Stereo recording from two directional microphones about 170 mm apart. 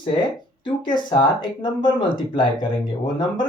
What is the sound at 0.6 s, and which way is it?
Speech, 25° left (ahead or behind).